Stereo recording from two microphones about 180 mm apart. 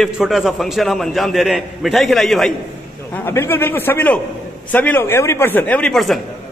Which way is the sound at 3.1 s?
15° left (ahead or behind).